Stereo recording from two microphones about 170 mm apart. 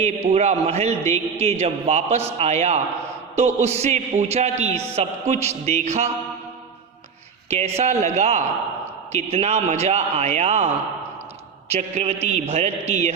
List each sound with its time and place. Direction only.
0.0 s a man's voice: 40° right (ahead or behind)
7.5 s a man's voice: 40° right (ahead or behind)
11.7 s a man's voice: 40° right (ahead or behind)